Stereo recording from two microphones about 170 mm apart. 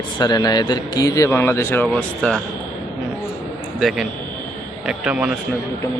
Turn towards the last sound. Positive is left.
turn(degrees=-5)  # may be behind; listen again after turning